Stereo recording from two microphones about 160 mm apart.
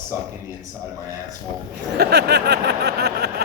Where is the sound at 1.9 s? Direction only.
90° right.